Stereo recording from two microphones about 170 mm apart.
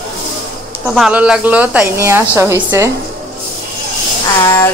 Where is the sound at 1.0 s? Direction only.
5° right (ahead or behind).